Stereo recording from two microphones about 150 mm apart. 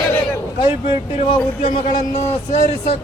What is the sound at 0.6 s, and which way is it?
Speech, 35° left (ahead or behind).